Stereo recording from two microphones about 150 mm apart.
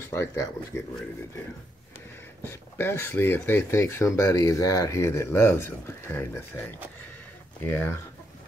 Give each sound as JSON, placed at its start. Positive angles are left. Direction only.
{"t": 0.1, "sound": "speech", "side_deg": 15}
{"t": 2.4, "sound": "speech", "side_deg": 15}